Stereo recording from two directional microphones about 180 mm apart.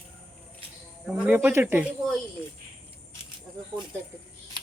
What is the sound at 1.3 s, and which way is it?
Speech, 10° right (ahead or behind).